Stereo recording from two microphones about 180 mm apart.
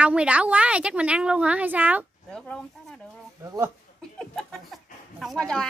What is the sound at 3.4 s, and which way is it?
Speech, 15° right (ahead or behind).